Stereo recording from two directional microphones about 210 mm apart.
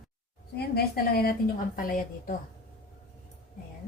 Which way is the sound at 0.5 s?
45° left (ahead or behind).